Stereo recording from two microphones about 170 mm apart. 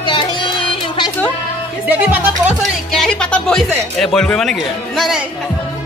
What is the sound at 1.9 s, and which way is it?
Speech, 10° right (ahead or behind).